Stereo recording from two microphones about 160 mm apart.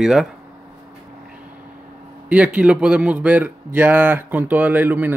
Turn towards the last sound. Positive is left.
turn(degrees=-10)  # may be behind; listen again after turning